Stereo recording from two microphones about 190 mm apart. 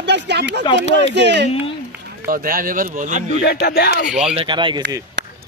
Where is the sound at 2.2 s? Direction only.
50° right (ahead or behind).